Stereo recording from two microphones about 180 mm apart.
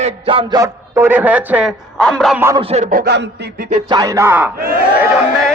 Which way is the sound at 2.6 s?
35° right (ahead or behind).